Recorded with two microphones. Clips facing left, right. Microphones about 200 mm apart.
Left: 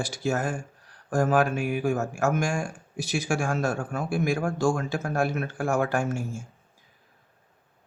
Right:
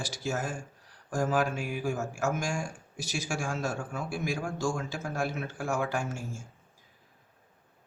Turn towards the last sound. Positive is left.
turn(degrees=55)  # may be behind; listen again after turning